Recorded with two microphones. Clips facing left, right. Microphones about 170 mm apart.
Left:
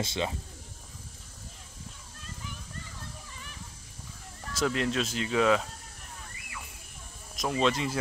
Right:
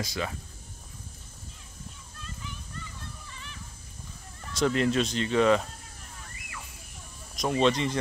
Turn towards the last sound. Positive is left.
turn(degrees=0)  # may be behind; listen again after turning